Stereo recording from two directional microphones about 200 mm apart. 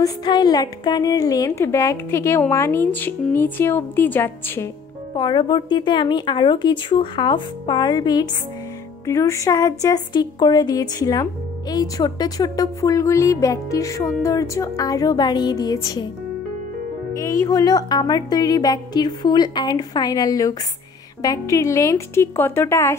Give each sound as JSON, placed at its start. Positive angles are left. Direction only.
{"t": 0.0, "sound": "a woman's voice", "side_deg": 20}
{"t": 5.1, "sound": "a woman's voice", "side_deg": 25}
{"t": 17.2, "sound": "a woman's voice", "side_deg": 15}